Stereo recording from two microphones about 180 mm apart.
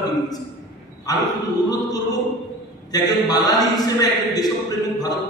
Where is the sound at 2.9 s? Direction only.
20° left (ahead or behind).